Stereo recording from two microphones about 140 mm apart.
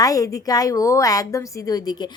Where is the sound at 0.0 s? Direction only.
25° left (ahead or behind).